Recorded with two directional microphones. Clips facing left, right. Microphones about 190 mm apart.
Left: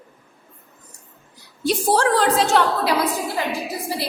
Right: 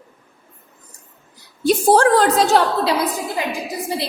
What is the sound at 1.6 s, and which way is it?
Speech, 50° right (ahead or behind).